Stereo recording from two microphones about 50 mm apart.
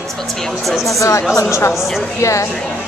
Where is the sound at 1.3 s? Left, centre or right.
Left.